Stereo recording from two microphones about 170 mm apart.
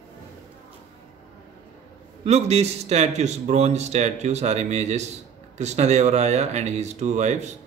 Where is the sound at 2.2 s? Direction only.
40° right (ahead or behind).